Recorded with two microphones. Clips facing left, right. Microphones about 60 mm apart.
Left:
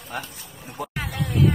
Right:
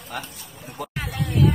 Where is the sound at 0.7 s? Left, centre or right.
Centre.